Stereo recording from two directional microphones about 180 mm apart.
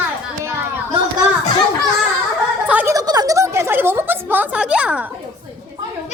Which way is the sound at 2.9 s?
20° right (ahead or behind).